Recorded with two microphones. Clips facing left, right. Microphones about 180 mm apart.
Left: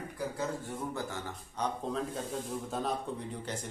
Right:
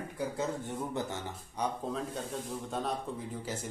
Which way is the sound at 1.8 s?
Centre (ahead or behind).